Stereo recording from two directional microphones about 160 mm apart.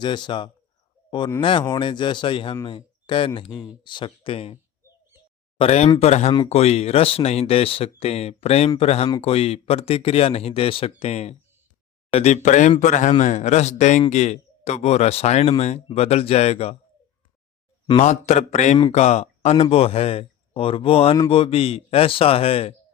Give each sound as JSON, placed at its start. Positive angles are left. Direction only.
{"t": 0.0, "sound": "speech", "side_deg": 30}
{"t": 5.5, "sound": "speech", "side_deg": 40}
{"t": 17.8, "sound": "speech", "side_deg": 40}